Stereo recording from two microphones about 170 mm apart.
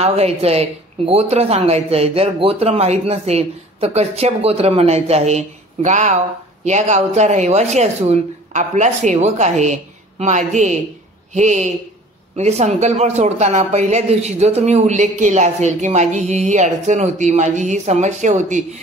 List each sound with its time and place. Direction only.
0.0 s speech: 40° right (ahead or behind)